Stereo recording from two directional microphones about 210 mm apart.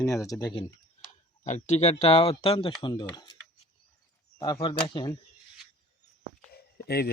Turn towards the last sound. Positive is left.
turn(degrees=50)  # may be behind; listen again after turning